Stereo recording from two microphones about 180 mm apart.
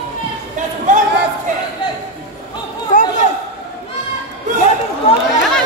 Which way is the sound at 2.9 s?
45° left (ahead or behind).